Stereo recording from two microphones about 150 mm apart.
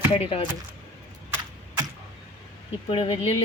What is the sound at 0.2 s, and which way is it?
Speech, 40° left (ahead or behind).